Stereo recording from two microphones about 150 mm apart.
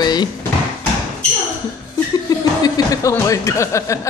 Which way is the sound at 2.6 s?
25° left (ahead or behind).